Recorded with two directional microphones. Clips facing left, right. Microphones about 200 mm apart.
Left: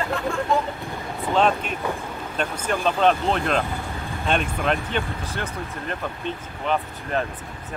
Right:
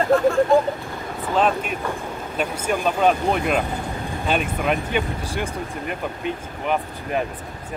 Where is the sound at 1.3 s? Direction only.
5° right (ahead or behind).